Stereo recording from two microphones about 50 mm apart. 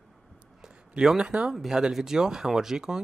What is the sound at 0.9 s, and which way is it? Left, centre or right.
Speech, centre.